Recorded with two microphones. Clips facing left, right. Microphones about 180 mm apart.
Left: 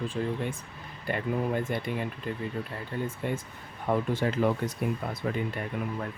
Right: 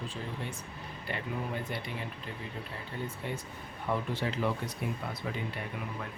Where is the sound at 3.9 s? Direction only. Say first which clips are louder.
Left 6 dB; 50° left (ahead or behind).